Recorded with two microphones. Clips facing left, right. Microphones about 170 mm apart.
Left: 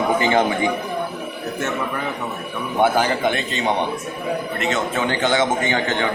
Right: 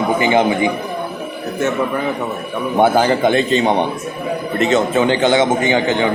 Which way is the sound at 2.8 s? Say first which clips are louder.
Right 5 dB; 30° right (ahead or behind).